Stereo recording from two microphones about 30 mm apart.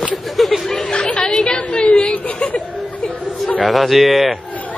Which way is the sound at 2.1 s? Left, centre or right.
Left.